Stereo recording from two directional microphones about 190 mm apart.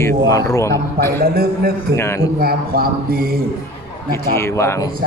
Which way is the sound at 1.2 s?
50° right (ahead or behind).